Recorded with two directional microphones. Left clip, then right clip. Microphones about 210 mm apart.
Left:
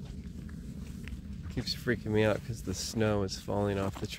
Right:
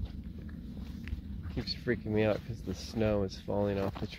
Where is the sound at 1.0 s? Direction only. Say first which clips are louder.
Even; 45° right (ahead or behind).